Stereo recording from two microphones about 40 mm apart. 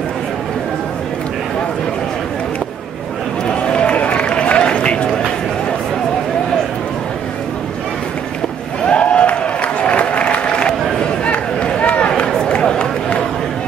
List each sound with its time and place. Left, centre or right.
3.4 s run: left
8.8 s applause: left
11.2 s run: left